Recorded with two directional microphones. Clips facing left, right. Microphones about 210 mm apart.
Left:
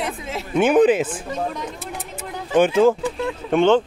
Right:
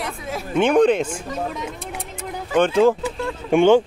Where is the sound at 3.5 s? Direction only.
10° right (ahead or behind).